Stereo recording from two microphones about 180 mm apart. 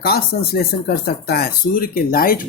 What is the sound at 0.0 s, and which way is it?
Speech, 60° left (ahead or behind).